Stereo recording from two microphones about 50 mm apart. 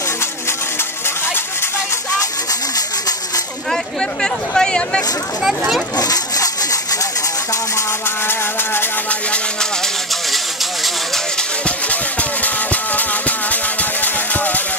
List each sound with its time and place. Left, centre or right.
4.0 s speech: centre
8.3 s music: left
10.3 s a sound: centre
11.6 s vehicle: left